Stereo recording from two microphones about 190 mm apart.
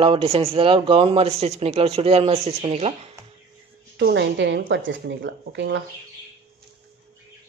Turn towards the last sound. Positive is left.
turn(degrees=-70)  # may be behind; listen again after turning